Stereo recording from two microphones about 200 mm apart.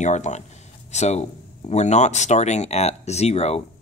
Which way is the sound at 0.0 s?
35° left (ahead or behind).